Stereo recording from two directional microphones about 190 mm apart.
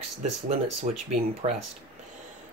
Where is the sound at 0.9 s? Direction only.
35° right (ahead or behind).